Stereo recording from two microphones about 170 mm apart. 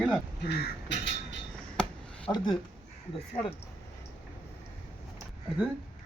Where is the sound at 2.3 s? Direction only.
20° left (ahead or behind).